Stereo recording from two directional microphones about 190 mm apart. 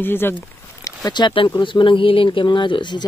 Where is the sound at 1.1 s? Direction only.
25° left (ahead or behind).